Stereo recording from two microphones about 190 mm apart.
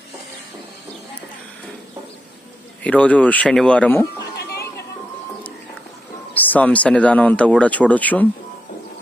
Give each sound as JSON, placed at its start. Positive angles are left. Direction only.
{"t": 2.8, "sound": "speech", "side_deg": 5}
{"t": 4.4, "sound": "music", "side_deg": 60}
{"t": 6.3, "sound": "speech", "side_deg": 10}